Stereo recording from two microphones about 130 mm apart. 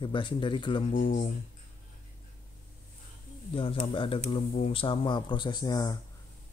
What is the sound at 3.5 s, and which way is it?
Speech, 45° left (ahead or behind).